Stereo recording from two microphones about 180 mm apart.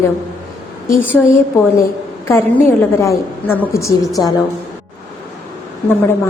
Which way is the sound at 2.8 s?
15° left (ahead or behind).